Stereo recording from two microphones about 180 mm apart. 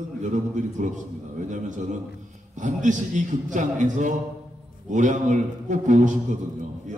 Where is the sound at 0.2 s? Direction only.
45° right (ahead or behind).